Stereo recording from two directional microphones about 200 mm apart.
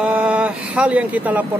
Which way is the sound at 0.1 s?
5° right (ahead or behind).